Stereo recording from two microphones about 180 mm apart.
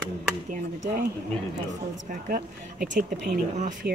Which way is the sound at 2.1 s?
50° right (ahead or behind).